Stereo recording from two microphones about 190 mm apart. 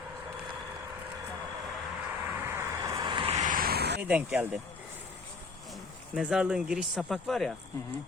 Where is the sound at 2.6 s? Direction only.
15° right (ahead or behind); by 4.0 s 60° right (ahead or behind).